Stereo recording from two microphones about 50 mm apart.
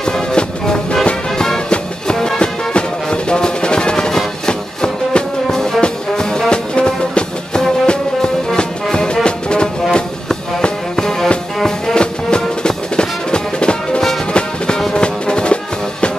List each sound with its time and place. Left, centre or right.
0.0 s music: centre